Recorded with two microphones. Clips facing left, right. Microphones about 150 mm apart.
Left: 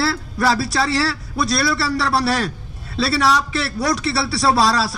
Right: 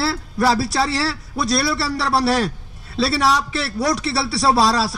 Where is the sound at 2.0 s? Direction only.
10° right (ahead or behind).